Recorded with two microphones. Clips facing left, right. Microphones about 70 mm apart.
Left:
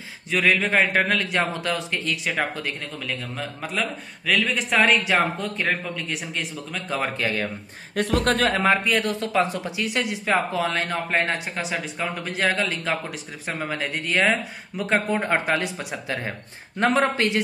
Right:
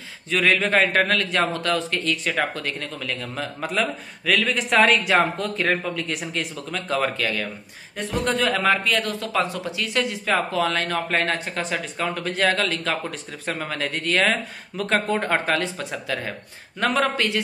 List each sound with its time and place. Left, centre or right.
0.3 s a man's voice: centre
7.0 s speech: left
7.9 s speech: left
8.5 s a man's voice: left